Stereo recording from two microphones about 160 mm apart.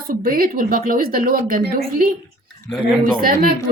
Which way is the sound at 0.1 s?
65° right (ahead or behind).